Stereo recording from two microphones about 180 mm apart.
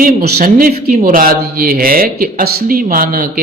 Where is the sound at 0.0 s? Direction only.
55° right (ahead or behind).